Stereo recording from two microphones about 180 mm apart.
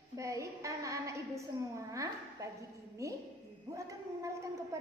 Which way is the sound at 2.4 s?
15° right (ahead or behind).